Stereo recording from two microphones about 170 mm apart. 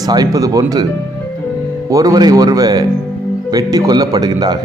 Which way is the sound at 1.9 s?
20° right (ahead or behind).